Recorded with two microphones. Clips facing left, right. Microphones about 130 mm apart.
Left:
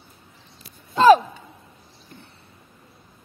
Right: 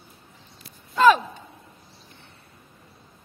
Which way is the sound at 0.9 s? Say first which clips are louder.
Left 4 dB; 30° left (ahead or behind).